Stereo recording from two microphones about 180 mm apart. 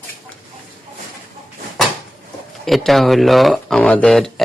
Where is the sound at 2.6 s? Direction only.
Centre (ahead or behind).